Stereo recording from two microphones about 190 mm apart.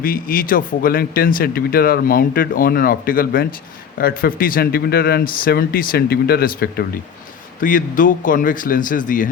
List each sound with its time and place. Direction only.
0.0 s speech: 45° left (ahead or behind)